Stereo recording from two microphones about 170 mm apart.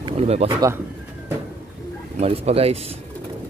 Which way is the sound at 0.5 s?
15° right (ahead or behind).